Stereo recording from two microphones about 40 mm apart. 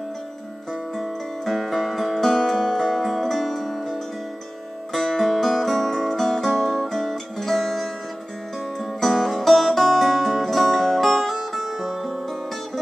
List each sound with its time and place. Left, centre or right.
0.9 s music: centre
4.9 s music: centre